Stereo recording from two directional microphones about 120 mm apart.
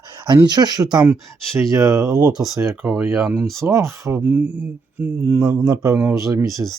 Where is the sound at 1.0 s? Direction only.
25° right (ahead or behind).